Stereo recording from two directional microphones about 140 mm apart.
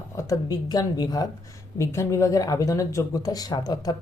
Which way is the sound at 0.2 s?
25° left (ahead or behind).